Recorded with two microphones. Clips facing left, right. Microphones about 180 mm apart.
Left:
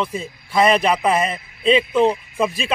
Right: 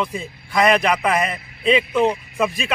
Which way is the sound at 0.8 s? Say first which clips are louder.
Left 1 dB; 30° left (ahead or behind).